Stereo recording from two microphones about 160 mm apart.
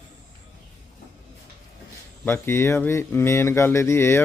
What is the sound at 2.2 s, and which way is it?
Speech, 15° left (ahead or behind).